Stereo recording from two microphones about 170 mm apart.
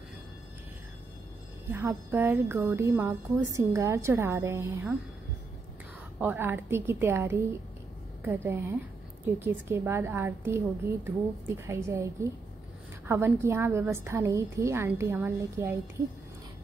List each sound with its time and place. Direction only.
1.7 s speech: 10° right (ahead or behind)
6.1 s speech: 10° right (ahead or behind)